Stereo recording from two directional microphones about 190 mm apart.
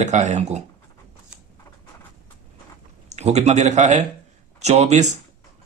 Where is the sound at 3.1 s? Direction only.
35° right (ahead or behind).